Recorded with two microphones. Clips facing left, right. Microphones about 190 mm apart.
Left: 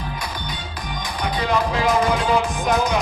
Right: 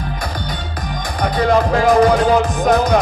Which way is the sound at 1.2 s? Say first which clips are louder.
Right 7 dB; 45° right (ahead or behind).